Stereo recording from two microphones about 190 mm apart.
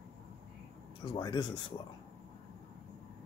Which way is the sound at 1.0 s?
25° left (ahead or behind).